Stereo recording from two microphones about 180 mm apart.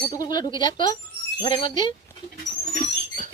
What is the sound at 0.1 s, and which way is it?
Speech, 20° left (ahead or behind).